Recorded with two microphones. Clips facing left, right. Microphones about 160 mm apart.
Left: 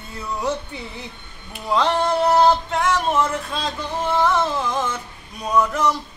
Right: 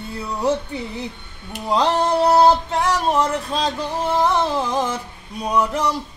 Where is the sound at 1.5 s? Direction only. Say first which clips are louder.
Right 1 dB; 35° right (ahead or behind).